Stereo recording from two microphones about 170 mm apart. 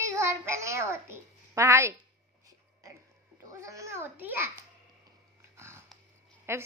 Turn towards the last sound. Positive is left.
turn(degrees=-15)  # may be behind; listen again after turning